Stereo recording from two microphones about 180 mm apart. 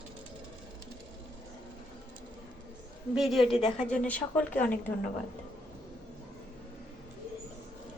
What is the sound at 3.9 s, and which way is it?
Speech, 5° left (ahead or behind).